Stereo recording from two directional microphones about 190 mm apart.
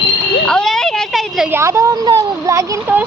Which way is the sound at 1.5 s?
15° right (ahead or behind).